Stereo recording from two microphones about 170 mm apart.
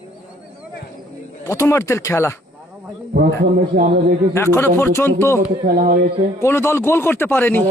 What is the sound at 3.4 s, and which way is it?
Speech, 60° right (ahead or behind).